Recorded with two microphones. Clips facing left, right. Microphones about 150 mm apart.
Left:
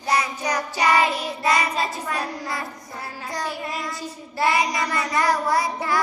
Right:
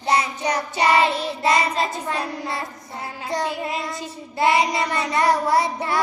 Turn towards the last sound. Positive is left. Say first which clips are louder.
# right 2 dB
turn(degrees=-25)  # may be behind; listen again after turning